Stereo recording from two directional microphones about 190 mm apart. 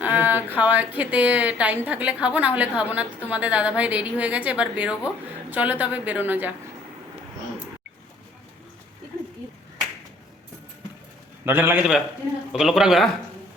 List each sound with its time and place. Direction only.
0.0 s speech: 10° right (ahead or behind)
11.4 s a man's voice: 10° right (ahead or behind)